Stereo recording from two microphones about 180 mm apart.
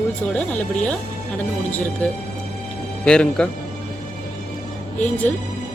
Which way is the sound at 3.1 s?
5° left (ahead or behind).